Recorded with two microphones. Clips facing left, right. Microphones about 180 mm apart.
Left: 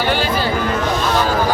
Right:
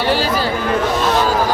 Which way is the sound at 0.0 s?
35° right (ahead or behind).